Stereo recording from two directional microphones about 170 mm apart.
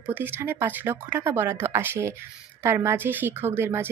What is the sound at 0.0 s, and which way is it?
A woman's voice, 10° right (ahead or behind).